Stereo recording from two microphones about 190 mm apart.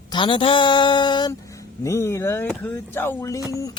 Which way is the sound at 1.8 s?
15° left (ahead or behind).